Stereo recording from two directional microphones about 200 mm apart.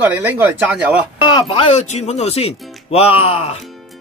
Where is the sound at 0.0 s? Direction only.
10° right (ahead or behind).